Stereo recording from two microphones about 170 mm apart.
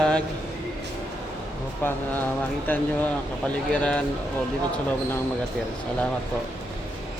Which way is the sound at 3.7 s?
5° left (ahead or behind).